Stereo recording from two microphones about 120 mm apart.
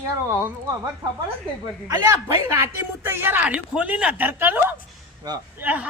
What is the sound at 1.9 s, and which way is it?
A man's voice, 25° right (ahead or behind).